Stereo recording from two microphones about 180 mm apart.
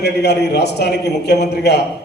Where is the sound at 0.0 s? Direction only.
65° left (ahead or behind).